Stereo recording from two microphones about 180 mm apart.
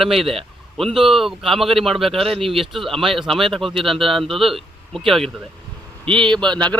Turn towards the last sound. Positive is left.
turn(degrees=5)  # may be behind; listen again after turning